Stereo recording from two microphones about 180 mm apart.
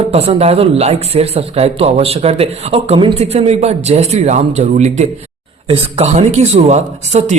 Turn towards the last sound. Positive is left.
turn(degrees=-40)  # may be behind; listen again after turning